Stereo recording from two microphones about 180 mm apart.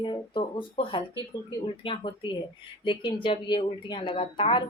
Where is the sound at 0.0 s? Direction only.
25° left (ahead or behind).